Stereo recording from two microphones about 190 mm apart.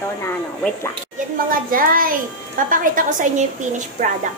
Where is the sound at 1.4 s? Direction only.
50° right (ahead or behind).